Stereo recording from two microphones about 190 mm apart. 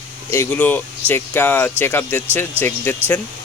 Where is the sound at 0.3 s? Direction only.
10° left (ahead or behind).